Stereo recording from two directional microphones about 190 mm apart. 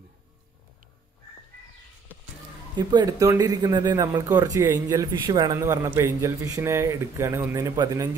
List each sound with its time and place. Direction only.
2.9 s speech: 20° right (ahead or behind)